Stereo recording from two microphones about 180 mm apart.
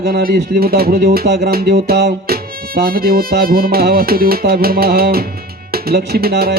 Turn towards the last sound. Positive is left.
turn(degrees=-55)  # may be behind; listen again after turning